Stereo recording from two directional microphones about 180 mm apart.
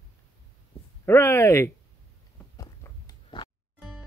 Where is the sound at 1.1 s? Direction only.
15° left (ahead or behind).